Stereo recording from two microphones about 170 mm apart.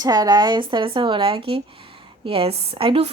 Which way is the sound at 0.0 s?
25° right (ahead or behind).